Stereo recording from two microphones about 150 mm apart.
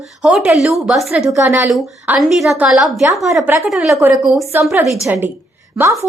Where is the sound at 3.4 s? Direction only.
15° right (ahead or behind).